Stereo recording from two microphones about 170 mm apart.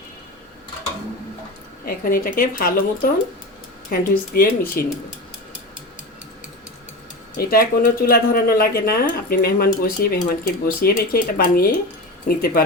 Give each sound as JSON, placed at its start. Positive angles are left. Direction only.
{"t": 1.8, "sound": "speech", "side_deg": 60}
{"t": 7.3, "sound": "speech", "side_deg": 55}